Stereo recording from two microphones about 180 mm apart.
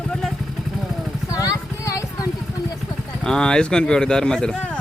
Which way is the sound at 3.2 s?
5° left (ahead or behind).